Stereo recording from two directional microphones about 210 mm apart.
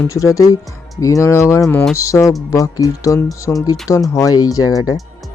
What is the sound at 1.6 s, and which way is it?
Speech, centre (ahead or behind).